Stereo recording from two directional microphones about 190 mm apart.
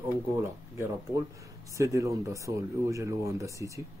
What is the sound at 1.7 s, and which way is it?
Speech, 15° right (ahead or behind).